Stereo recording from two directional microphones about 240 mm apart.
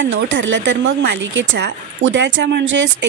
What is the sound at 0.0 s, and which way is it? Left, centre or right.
Speech, right.